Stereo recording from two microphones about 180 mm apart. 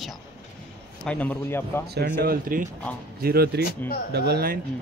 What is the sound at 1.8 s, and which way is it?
Speech, 65° right (ahead or behind).